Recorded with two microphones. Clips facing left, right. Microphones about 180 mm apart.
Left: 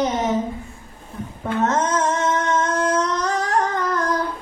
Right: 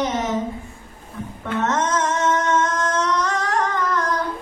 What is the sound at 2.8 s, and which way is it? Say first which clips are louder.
Singing: left 1 dB; 35° left (ahead or behind).